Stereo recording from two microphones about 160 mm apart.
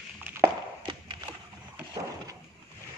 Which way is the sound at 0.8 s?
30° right (ahead or behind).